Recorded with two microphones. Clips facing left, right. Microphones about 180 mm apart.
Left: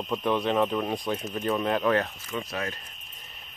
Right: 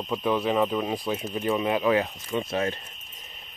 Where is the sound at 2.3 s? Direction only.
25° right (ahead or behind).